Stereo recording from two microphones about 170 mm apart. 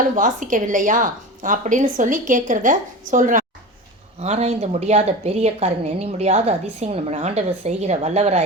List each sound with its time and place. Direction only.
0.0 s a woman's voice: 50° right (ahead or behind)